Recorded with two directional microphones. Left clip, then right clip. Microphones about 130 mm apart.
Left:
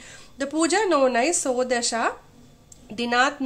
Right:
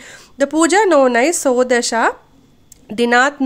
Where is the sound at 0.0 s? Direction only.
60° right (ahead or behind).